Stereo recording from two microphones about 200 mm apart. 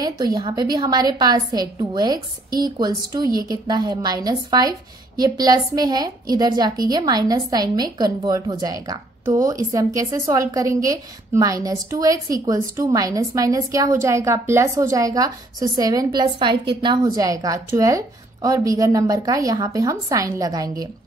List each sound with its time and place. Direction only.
0.0 s a woman's voice: 20° right (ahead or behind)